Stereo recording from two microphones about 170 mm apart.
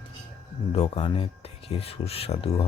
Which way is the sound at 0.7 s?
35° left (ahead or behind).